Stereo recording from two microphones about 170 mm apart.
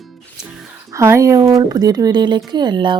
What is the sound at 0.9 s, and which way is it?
Speech, 15° right (ahead or behind).